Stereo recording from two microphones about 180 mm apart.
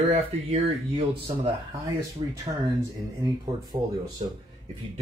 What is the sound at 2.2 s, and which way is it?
Speech, 30° right (ahead or behind).